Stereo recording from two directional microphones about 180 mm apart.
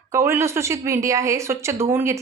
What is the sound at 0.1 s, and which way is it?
Speech, 15° right (ahead or behind).